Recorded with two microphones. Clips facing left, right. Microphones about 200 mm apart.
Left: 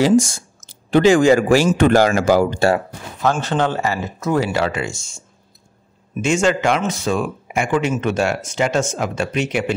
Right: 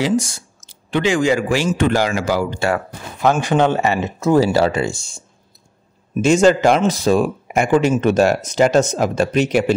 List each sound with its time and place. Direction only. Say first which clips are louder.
0.0 s speech: left 4 dB; 45° left (ahead or behind)
3.2 s speech: right 3 dB; 15° right (ahead or behind); by 5.2 s 35° right (ahead or behind)
6.2 s speech: right 5 dB; 35° right (ahead or behind)